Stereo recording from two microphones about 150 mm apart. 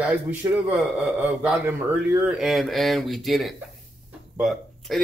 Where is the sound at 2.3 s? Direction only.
Centre (ahead or behind).